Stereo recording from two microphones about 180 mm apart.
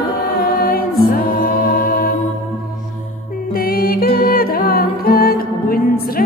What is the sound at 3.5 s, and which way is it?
Music, 55° left (ahead or behind).